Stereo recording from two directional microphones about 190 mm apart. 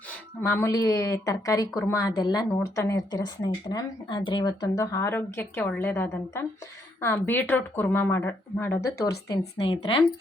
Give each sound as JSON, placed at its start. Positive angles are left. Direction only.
{"t": 0.4, "sound": "a woman's voice", "side_deg": 15}
{"t": 9.6, "sound": "a woman's voice", "side_deg": 30}